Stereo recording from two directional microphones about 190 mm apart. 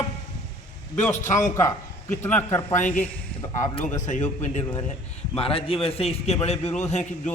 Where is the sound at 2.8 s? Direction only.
40° left (ahead or behind).